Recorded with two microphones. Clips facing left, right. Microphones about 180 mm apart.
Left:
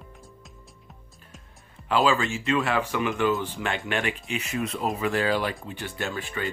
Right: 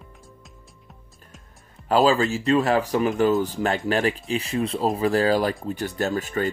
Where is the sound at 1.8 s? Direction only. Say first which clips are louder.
Right 4 dB; 40° right (ahead or behind).